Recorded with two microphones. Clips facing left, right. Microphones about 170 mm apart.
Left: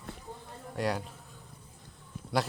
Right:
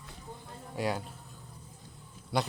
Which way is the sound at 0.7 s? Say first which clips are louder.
Left 1 dB; centre (ahead or behind).